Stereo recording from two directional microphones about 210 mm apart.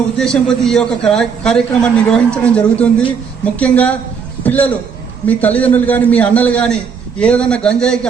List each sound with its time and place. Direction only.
0.2 s a man's voice: centre (ahead or behind)